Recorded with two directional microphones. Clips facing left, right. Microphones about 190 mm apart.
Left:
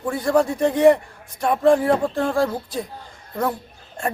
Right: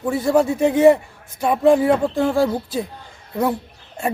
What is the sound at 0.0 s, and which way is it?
Speech, 5° right (ahead or behind).